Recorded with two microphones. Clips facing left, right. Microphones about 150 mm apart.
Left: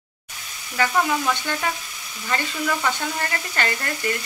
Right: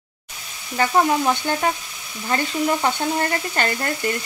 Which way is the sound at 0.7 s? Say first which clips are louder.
Right 3 dB; 30° right (ahead or behind).